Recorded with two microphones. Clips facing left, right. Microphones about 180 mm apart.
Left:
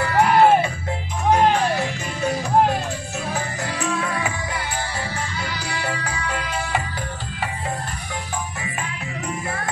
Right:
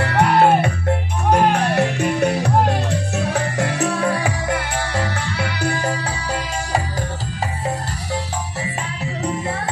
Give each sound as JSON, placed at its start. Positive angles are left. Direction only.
{"t": 0.0, "sound": "music", "side_deg": -70}
{"t": 3.8, "sound": "music", "side_deg": -35}
{"t": 4.5, "sound": "music", "side_deg": -70}